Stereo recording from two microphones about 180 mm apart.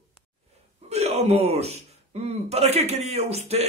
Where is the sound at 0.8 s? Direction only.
35° right (ahead or behind).